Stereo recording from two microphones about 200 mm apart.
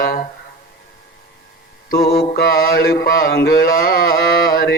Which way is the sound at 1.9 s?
50° left (ahead or behind).